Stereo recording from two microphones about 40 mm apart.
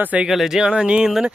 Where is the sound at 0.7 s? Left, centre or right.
Right.